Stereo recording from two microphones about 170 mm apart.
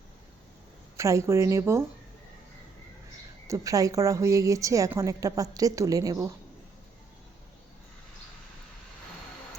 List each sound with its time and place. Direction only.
0.9 s speech: 15° right (ahead or behind)
3.4 s a woman's voice: 20° right (ahead or behind)